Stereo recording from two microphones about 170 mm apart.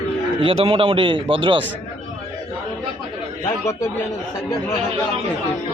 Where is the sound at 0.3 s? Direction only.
35° right (ahead or behind).